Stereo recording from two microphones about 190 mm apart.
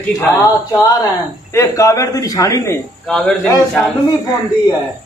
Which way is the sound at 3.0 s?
5° left (ahead or behind).